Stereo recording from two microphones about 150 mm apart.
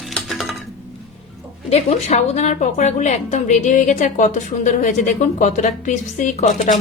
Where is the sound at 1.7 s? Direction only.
50° left (ahead or behind).